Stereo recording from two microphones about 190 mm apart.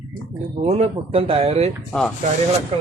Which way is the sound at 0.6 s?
35° right (ahead or behind).